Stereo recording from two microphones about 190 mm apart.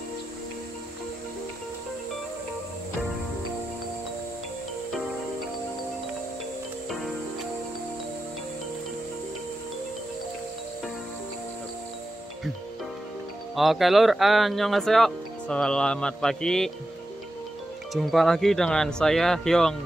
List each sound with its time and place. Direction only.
13.6 s speech: centre (ahead or behind)
17.9 s speech: centre (ahead or behind)